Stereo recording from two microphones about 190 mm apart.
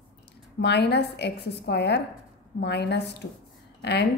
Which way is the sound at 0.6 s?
60° left (ahead or behind).